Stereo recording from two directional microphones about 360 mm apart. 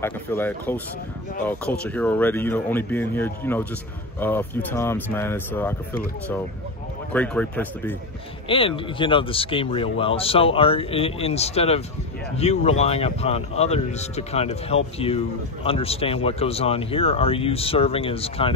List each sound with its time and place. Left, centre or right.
0.0 s speech: centre
8.5 s speech: centre